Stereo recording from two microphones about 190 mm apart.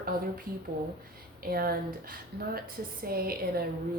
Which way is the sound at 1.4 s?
50° right (ahead or behind).